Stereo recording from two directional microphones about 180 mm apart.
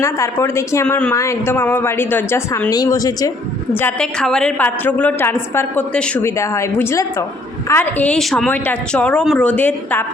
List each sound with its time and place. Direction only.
0.0 s a woman's voice: 15° left (ahead or behind)
3.8 s a woman's voice: 10° left (ahead or behind)